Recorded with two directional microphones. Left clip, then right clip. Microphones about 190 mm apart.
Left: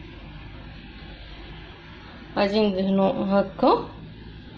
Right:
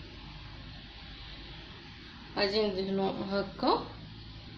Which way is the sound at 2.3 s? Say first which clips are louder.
Left 7 dB; 30° left (ahead or behind).